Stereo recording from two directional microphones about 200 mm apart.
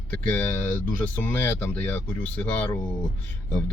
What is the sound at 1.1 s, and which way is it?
Speech, 10° left (ahead or behind).